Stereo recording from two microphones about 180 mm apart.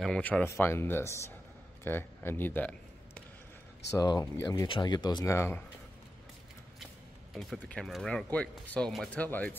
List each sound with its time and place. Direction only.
0.0 s speech: 5° left (ahead or behind)
3.9 s speech: 20° left (ahead or behind)
7.3 s speech: centre (ahead or behind)